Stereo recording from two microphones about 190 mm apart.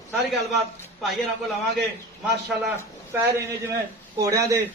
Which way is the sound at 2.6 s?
15° right (ahead or behind).